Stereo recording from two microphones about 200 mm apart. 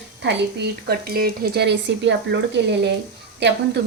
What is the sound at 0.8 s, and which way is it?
Speech, 50° right (ahead or behind).